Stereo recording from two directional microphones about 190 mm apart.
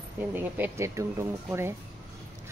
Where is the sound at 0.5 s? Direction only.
15° right (ahead or behind).